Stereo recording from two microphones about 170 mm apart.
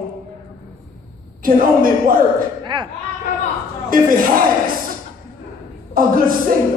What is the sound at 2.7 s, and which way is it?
Speech, 25° right (ahead or behind).